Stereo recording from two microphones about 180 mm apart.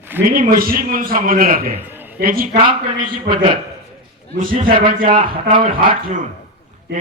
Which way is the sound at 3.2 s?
25° right (ahead or behind).